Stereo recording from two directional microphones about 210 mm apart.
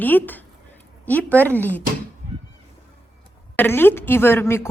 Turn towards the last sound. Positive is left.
turn(degrees=10)  # may be behind; listen again after turning